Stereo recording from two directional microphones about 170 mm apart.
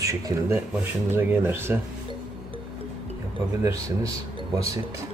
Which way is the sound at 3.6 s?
20° right (ahead or behind).